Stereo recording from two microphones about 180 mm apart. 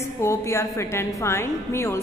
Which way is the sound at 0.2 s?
15° left (ahead or behind).